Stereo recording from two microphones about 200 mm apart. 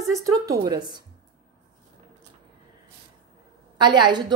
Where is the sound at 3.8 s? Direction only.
20° right (ahead or behind).